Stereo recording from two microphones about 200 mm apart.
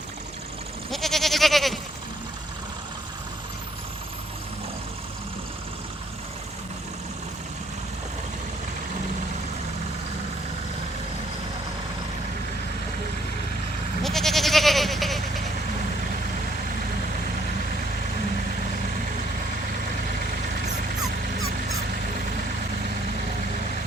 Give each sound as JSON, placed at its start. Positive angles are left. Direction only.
{"t": 0.9, "sound": "goat", "side_deg": 0}
{"t": 14.0, "sound": "goat", "side_deg": 0}